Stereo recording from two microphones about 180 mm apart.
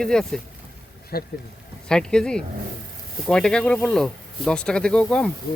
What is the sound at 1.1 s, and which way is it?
Speech, 60° left (ahead or behind).